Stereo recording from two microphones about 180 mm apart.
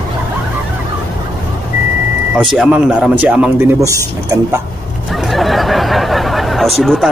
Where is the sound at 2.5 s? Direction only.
5° right (ahead or behind).